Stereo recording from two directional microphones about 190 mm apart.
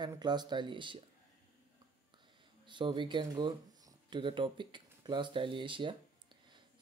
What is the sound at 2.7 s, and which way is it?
Speech, 25° right (ahead or behind).